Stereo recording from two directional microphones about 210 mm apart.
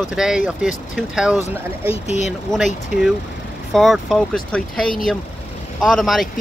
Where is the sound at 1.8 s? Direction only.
30° left (ahead or behind).